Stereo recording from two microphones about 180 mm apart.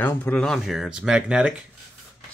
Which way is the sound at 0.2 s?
5° left (ahead or behind).